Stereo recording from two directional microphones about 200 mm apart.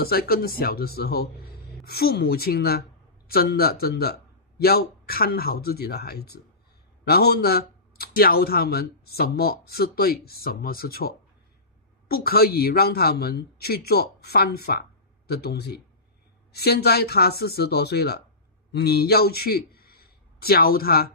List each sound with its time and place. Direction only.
0.0 s a man's voice: 50° left (ahead or behind)